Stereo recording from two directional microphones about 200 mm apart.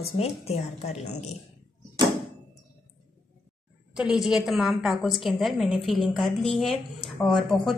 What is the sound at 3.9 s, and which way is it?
A woman's voice, centre (ahead or behind).